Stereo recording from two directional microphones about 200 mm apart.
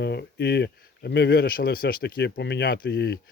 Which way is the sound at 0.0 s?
55° left (ahead or behind).